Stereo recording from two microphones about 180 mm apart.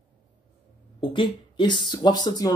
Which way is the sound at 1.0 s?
25° left (ahead or behind).